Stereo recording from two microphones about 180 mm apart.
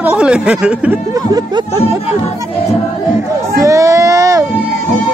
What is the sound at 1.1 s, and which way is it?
Music, 20° right (ahead or behind).